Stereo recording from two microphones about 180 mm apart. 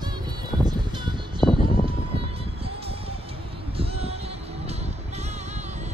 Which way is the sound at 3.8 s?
35° right (ahead or behind).